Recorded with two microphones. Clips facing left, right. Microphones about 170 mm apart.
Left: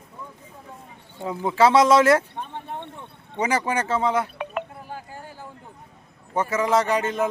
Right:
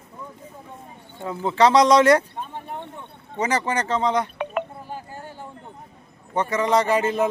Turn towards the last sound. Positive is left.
turn(degrees=0)  # may be behind; listen again after turning